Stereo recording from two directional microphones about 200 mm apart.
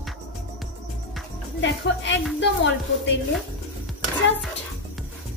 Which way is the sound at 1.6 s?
65° left (ahead or behind).